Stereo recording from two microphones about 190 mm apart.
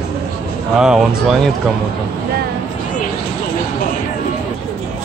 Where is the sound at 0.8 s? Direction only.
5° right (ahead or behind).